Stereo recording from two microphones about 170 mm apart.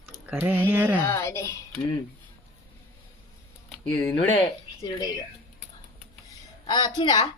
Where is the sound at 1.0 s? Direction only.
15° left (ahead or behind).